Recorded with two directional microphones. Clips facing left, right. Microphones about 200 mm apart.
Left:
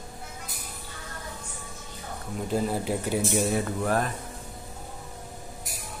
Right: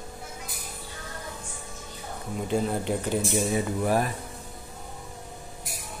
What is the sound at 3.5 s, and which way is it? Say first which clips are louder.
Speech: right 1 dB; 10° right (ahead or behind).